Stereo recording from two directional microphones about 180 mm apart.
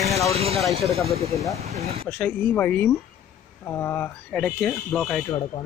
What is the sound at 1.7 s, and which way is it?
Speech, 35° right (ahead or behind).